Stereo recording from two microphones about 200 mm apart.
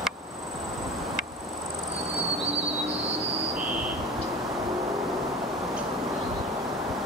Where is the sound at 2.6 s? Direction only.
Centre (ahead or behind).